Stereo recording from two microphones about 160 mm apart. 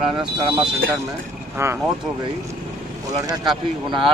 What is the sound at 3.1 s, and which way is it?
Speech, 30° right (ahead or behind).